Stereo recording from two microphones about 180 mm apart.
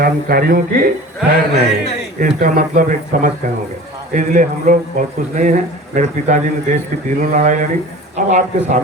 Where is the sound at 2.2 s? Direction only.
50° right (ahead or behind).